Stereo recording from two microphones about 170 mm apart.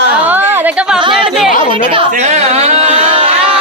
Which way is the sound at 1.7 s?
30° right (ahead or behind).